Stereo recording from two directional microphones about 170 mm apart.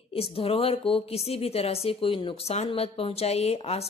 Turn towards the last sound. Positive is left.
turn(degrees=35)  # may be behind; listen again after turning